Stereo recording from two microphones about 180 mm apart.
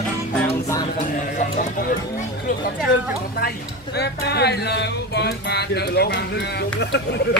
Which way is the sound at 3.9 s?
65° left (ahead or behind).